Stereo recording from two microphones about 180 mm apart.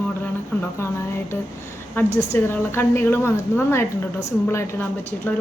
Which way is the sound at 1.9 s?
15° left (ahead or behind).